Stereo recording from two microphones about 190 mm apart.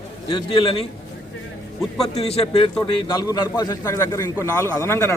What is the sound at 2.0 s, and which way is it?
A man's voice, 35° left (ahead or behind).